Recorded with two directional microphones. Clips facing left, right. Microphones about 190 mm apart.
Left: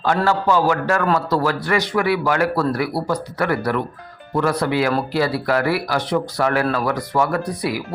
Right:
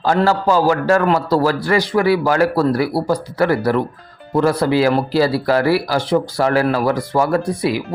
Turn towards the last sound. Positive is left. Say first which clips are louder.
# right 5 dB
turn(degrees=-25)  # may be behind; listen again after turning